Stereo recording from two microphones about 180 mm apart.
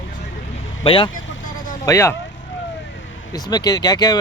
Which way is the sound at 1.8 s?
15° left (ahead or behind).